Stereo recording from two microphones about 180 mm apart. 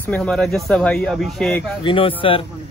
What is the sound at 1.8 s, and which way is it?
Speech, 30° left (ahead or behind).